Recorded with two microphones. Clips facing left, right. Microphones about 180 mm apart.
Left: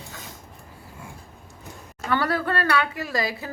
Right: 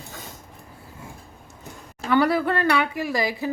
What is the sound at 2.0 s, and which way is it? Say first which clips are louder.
A woman's voice: right 4 dB; 15° right (ahead or behind).